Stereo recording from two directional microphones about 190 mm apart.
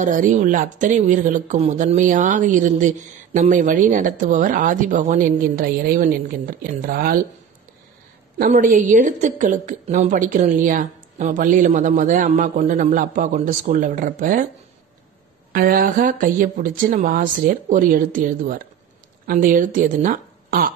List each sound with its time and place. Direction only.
0.0 s speech: 40° right (ahead or behind)
8.4 s a woman's voice: 45° right (ahead or behind)
15.5 s speech: 50° right (ahead or behind)